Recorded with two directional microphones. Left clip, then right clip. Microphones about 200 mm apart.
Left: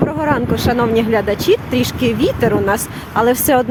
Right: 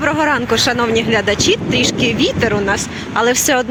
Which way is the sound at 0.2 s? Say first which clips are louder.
Right 3 dB; 10° left (ahead or behind).